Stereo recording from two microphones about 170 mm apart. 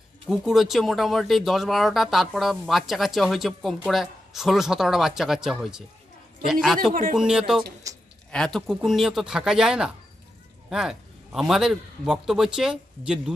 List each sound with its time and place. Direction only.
0.3 s speech: centre (ahead or behind)
6.9 s speech: 55° right (ahead or behind)
7.2 s speech: 5° right (ahead or behind)
7.8 s a woman's voice: 20° right (ahead or behind)
8.3 s a man's voice: 5° left (ahead or behind)